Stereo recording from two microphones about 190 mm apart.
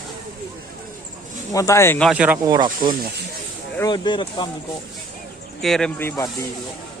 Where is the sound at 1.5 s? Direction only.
15° left (ahead or behind).